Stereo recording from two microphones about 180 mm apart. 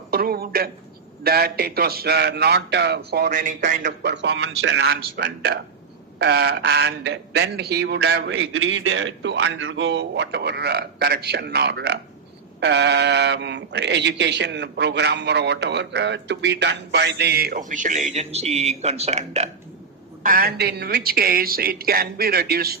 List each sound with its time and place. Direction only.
0.1 s speech: 60° right (ahead or behind)
4.0 s speech: 80° right; by 19.5 s 35° right (ahead or behind)
20.2 s speech: 55° right (ahead or behind)